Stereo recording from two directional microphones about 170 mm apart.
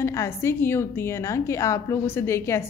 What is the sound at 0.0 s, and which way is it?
A woman's voice, 15° left (ahead or behind).